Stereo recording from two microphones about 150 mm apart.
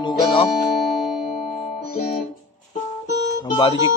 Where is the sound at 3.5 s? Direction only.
30° left (ahead or behind).